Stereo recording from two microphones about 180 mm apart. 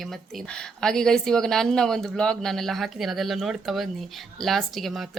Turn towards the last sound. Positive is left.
turn(degrees=0)  # may be behind; listen again after turning